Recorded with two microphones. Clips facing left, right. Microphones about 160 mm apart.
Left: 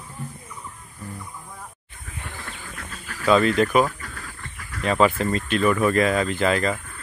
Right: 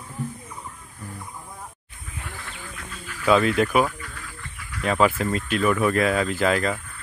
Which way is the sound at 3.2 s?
10° right (ahead or behind).